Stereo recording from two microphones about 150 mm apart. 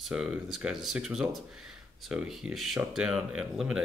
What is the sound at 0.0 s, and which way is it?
Speech, 5° right (ahead or behind).